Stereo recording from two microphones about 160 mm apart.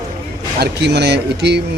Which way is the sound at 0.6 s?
90° right.